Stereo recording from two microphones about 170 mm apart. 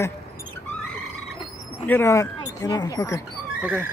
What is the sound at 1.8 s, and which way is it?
Speech, 15° left (ahead or behind).